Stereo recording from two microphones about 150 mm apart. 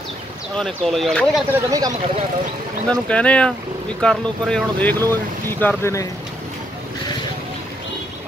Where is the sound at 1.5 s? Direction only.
20° right (ahead or behind).